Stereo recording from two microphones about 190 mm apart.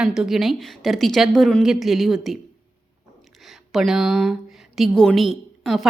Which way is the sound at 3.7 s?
Centre (ahead or behind).